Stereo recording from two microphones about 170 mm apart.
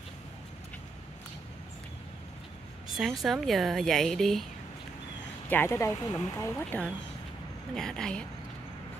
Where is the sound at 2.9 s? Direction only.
Centre (ahead or behind).